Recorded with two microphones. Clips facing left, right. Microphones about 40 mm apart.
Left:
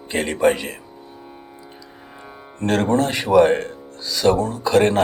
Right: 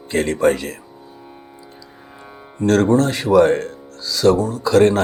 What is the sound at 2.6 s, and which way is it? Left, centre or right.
Speech, centre.